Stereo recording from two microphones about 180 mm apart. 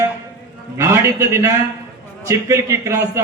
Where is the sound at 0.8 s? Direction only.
15° right (ahead or behind).